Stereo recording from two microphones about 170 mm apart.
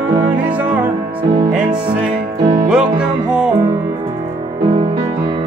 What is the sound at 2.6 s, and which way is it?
Music, 5° right (ahead or behind).